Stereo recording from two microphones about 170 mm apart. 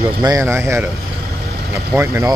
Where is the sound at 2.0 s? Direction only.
15° right (ahead or behind).